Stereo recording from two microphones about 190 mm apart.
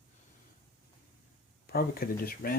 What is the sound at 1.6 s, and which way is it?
Speech, 55° left (ahead or behind).